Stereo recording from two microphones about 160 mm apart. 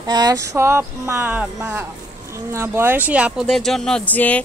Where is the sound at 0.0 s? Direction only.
25° right (ahead or behind).